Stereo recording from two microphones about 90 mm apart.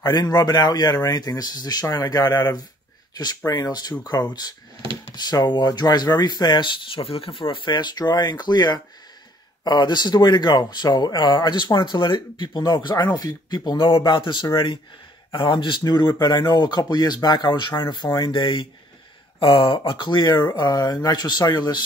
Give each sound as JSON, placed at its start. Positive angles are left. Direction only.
{"t": 0.0, "sound": "speech", "side_deg": 50}
{"t": 5.1, "sound": "speech", "side_deg": 50}